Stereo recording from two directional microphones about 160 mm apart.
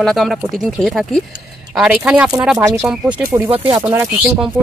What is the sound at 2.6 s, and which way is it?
Speech, 15° right (ahead or behind).